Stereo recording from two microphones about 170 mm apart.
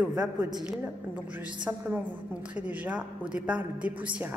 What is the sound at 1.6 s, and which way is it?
A woman's voice, 10° right (ahead or behind).